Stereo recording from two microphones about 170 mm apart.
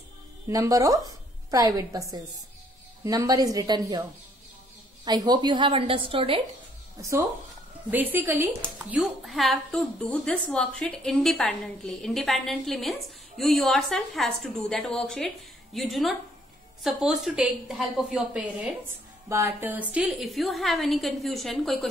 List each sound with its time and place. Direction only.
0.5 s a woman's voice: 20° right (ahead or behind)
5.0 s a woman's voice: 25° right (ahead or behind)
7.0 s a woman's voice: 20° right (ahead or behind)
19.2 s a woman's voice: 15° right (ahead or behind); by 21.7 s centre (ahead or behind)